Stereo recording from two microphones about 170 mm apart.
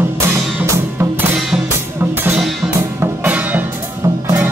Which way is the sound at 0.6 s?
10° right (ahead or behind).